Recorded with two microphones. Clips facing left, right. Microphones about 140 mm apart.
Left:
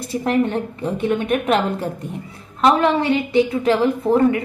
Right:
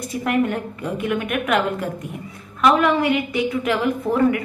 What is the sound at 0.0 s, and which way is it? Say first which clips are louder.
A woman's voice: left 2 dB; 30° left (ahead or behind).